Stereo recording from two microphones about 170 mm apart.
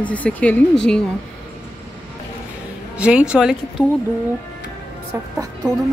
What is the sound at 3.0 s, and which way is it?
Speech, 5° right (ahead or behind).